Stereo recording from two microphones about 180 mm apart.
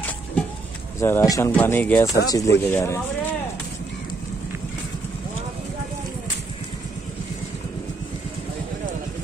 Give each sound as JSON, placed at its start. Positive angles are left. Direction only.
{"t": 0.9, "sound": "speech", "side_deg": 15}
{"t": 2.0, "sound": "speech", "side_deg": 20}